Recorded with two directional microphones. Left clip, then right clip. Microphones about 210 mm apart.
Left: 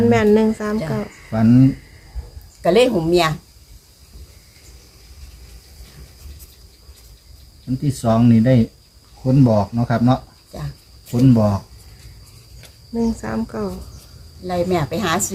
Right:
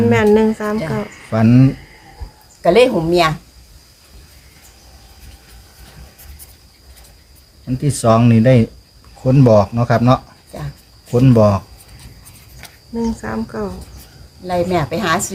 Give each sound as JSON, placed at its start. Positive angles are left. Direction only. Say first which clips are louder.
{"t": 0.1, "sound": "speech", "louder": "right 2 dB", "side_deg": 10}
{"t": 1.3, "sound": "speech", "louder": "right 2 dB", "side_deg": -50}
{"t": 2.6, "sound": "speech", "louder": "right 3 dB", "side_deg": 5}
{"t": 8.0, "sound": "speech", "louder": "right 4 dB", "side_deg": -50}
{"t": 12.9, "sound": "speech", "louder": "right 1 dB", "side_deg": 15}